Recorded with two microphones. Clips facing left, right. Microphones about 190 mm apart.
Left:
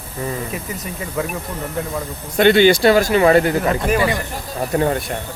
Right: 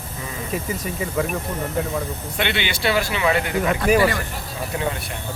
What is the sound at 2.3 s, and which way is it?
Speech, 40° left (ahead or behind).